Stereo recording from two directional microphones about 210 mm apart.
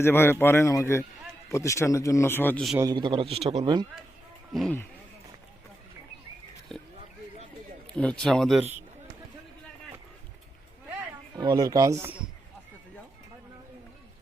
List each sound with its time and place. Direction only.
0.0 s speech: 10° left (ahead or behind)
2.7 s a man's voice: 20° right (ahead or behind)
4.5 s speech: 5° left (ahead or behind)
7.9 s speech: 5° left (ahead or behind)
11.3 s speech: 20° right (ahead or behind)